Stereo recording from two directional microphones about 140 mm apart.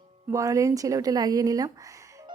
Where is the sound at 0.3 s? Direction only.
25° right (ahead or behind).